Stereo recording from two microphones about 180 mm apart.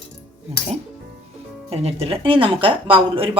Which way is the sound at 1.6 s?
35° right (ahead or behind).